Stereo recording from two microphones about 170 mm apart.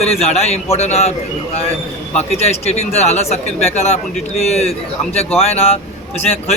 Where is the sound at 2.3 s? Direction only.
40° left (ahead or behind).